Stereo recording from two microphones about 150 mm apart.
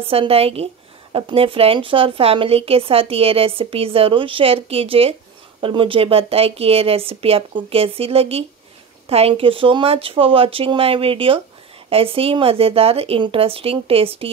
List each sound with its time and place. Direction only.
0.0 s a woman's voice: 40° right (ahead or behind)